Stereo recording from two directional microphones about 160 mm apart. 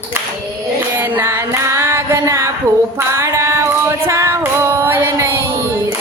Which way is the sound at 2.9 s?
15° right (ahead or behind).